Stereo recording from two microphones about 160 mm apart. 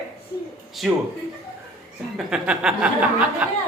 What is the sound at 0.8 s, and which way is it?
Speech, centre (ahead or behind).